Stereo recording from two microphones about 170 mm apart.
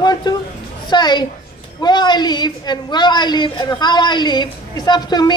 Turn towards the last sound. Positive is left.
turn(degrees=25)  # may be behind; listen again after turning